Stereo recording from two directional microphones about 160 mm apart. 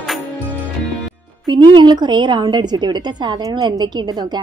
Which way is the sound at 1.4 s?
30° right (ahead or behind).